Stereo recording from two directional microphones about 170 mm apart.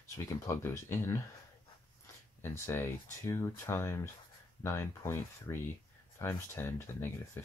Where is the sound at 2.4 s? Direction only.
15° left (ahead or behind).